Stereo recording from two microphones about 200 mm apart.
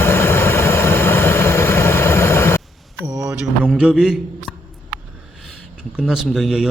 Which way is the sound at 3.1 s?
20° right (ahead or behind).